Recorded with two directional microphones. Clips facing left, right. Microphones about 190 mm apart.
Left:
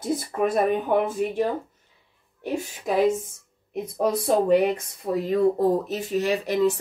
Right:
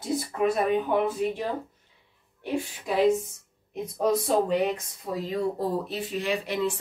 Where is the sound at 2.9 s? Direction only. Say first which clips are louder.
Left 3 dB; 45° left (ahead or behind).